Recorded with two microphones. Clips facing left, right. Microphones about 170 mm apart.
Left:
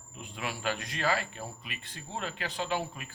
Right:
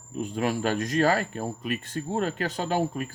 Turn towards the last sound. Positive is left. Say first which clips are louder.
# right 7 dB
turn(degrees=-45)  # may be behind; listen again after turning